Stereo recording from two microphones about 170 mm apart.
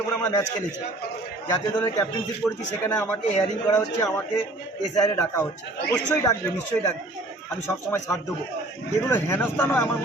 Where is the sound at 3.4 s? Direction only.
25° left (ahead or behind).